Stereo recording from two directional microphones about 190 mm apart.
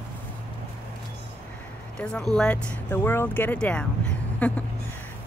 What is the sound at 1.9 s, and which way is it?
Speech, 5° left (ahead or behind).